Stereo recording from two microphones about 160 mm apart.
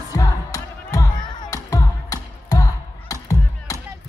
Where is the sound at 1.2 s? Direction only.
25° left (ahead or behind).